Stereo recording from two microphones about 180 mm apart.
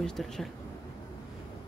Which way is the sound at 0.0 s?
5° left (ahead or behind).